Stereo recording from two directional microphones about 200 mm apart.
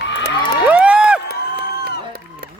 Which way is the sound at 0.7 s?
5° right (ahead or behind).